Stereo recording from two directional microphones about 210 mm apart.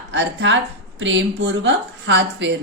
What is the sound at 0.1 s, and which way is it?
A woman's voice, 60° right (ahead or behind).